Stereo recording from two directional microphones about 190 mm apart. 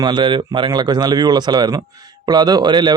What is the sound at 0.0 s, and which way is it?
Speech, 25° right (ahead or behind).